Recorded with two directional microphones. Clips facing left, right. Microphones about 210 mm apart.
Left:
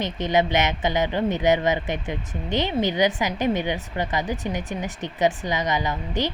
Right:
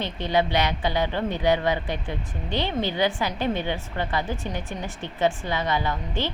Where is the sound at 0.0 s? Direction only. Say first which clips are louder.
Left 2 dB; 20° left (ahead or behind).